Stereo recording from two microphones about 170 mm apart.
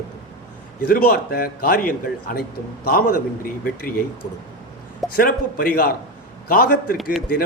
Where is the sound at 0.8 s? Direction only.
55° left (ahead or behind).